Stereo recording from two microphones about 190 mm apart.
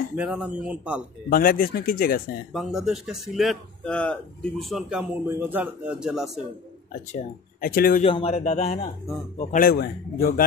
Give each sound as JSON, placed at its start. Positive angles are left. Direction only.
{"t": 0.1, "sound": "speech", "side_deg": -5}
{"t": 1.3, "sound": "speech", "side_deg": 50}
{"t": 2.5, "sound": "speech", "side_deg": 0}
{"t": 7.6, "sound": "speech", "side_deg": 50}
{"t": 8.0, "sound": "speech", "side_deg": 30}